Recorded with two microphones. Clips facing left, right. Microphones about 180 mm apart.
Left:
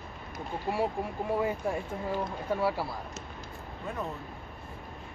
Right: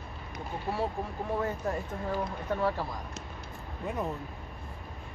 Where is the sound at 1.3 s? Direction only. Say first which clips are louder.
Left 1 dB; 10° left (ahead or behind).